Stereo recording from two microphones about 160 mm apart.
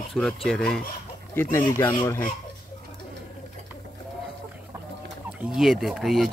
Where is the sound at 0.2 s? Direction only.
5° left (ahead or behind).